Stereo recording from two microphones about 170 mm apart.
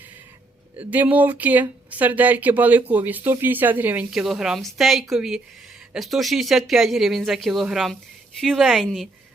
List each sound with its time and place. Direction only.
0.8 s speech: 10° right (ahead or behind)